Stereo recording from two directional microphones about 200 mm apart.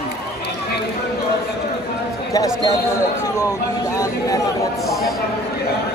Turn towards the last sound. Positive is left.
turn(degrees=15)  # may be behind; listen again after turning